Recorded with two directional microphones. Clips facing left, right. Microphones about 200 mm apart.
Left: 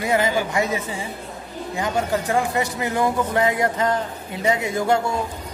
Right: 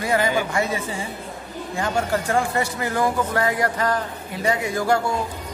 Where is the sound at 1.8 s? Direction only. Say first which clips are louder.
Even; 15° left (ahead or behind).